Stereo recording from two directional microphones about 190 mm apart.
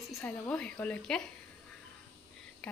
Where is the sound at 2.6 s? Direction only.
5° left (ahead or behind).